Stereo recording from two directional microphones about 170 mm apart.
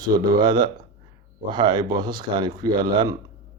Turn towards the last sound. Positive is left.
turn(degrees=-25)  # may be behind; listen again after turning